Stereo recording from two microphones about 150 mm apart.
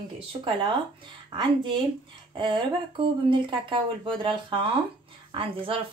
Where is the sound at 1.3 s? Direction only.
35° right (ahead or behind).